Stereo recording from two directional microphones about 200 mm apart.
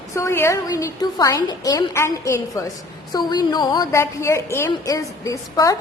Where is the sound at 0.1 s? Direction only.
15° left (ahead or behind).